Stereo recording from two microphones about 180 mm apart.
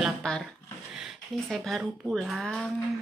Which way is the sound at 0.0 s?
5° left (ahead or behind).